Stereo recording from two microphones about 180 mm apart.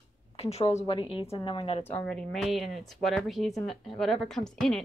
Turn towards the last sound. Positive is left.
turn(degrees=0)  # may be behind; listen again after turning